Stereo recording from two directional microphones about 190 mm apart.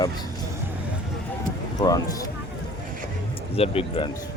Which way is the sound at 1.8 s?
20° left (ahead or behind).